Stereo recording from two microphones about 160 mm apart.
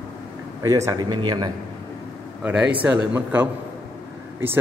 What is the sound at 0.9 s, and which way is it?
Speech, 25° right (ahead or behind).